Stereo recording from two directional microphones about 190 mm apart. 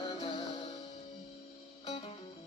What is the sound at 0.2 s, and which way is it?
Music, 25° left (ahead or behind).